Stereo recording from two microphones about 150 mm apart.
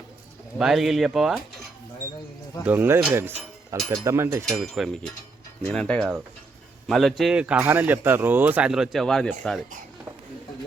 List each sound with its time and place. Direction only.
0.6 s speech: centre (ahead or behind)
2.6 s speech: 15° right (ahead or behind)
4.4 s speech: centre (ahead or behind)